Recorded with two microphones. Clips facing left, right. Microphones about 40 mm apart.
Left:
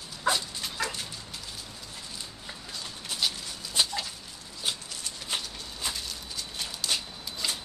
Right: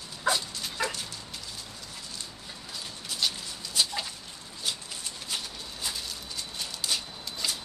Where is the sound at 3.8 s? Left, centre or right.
Left.